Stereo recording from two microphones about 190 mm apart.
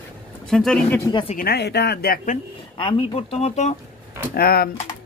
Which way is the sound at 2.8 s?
30° left (ahead or behind).